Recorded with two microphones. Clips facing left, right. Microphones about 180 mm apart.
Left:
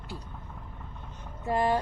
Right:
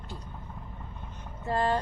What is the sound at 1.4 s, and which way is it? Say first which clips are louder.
Speech: left 1 dB; 15° left (ahead or behind).